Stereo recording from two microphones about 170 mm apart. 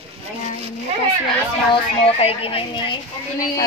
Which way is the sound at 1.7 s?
35° left (ahead or behind).